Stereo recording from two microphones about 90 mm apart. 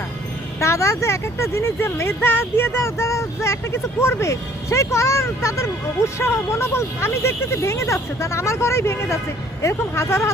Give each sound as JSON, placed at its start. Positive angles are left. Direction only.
{"t": 0.6, "sound": "speech", "side_deg": 35}